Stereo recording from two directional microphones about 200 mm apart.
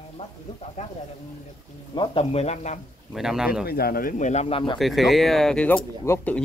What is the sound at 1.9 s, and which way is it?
Speech, 30° left (ahead or behind).